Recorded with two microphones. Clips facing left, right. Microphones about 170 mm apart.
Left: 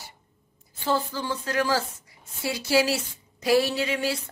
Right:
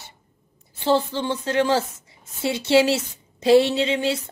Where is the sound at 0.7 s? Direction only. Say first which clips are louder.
Right 6 dB; 30° right (ahead or behind).